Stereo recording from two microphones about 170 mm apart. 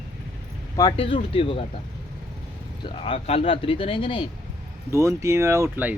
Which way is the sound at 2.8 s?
35° left (ahead or behind).